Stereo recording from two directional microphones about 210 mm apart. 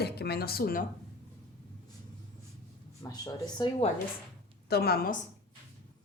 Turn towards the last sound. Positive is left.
turn(degrees=45)  # may be behind; listen again after turning